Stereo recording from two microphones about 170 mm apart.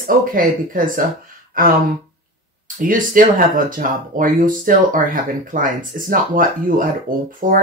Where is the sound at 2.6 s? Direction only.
55° right (ahead or behind).